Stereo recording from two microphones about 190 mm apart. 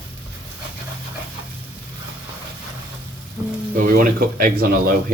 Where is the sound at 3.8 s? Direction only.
50° right (ahead or behind).